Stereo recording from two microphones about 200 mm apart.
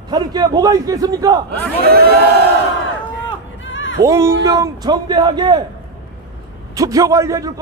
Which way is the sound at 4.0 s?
15° right (ahead or behind).